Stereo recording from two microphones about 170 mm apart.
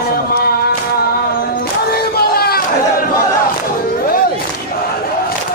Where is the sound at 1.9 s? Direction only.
65° left (ahead or behind).